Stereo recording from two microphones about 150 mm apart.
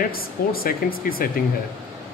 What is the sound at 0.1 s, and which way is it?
Speech, 85° left.